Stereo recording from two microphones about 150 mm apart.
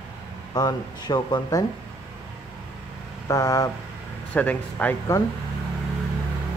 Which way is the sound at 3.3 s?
25° left (ahead or behind).